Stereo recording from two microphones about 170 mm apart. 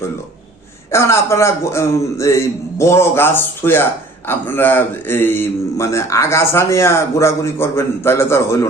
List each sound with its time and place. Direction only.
0.9 s a man's voice: 15° left (ahead or behind)